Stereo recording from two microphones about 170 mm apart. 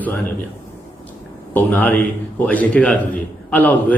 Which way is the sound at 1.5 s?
10° left (ahead or behind).